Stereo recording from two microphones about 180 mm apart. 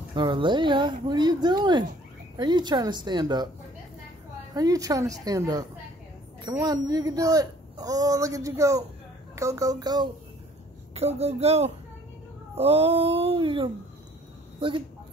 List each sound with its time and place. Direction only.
0.1 s speech: 25° right (ahead or behind)
4.6 s speech: 20° right (ahead or behind)
11.0 s a sound: 35° right (ahead or behind)
14.6 s speech: 30° right (ahead or behind)